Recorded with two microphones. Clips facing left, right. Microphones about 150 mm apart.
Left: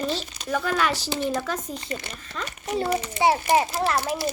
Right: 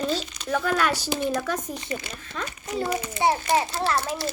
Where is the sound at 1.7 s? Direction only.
20° right (ahead or behind).